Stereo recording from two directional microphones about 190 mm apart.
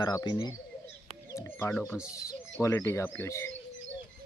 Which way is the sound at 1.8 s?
15° left (ahead or behind).